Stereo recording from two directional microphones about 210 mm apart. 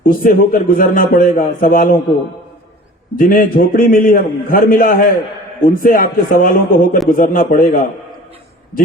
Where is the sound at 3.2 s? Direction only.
40° left (ahead or behind).